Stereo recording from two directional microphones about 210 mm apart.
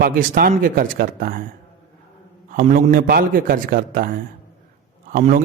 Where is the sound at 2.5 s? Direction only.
40° right (ahead or behind).